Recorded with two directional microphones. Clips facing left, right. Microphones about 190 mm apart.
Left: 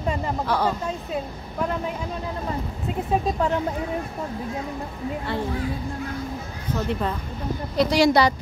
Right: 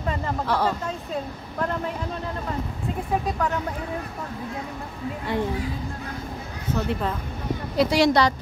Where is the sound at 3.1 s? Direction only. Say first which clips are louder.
Left 3 dB; 25° left (ahead or behind).